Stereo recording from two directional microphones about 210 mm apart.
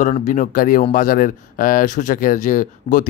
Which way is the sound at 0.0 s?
35° left (ahead or behind).